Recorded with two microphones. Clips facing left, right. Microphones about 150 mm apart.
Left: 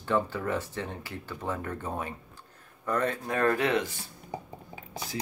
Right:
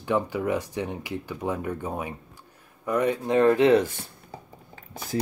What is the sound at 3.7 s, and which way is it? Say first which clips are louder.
Speech: right 9 dB; 50° right (ahead or behind).